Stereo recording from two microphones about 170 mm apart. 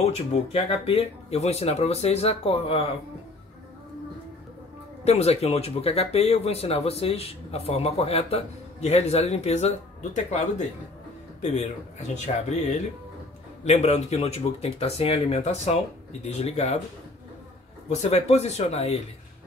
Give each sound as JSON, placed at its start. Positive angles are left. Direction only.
{"t": 0.0, "sound": "speech", "side_deg": 40}
{"t": 5.0, "sound": "speech", "side_deg": 40}
{"t": 17.8, "sound": "speech", "side_deg": 40}